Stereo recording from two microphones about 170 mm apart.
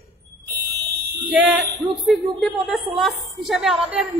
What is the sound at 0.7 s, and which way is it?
Fire alarm, 70° right (ahead or behind).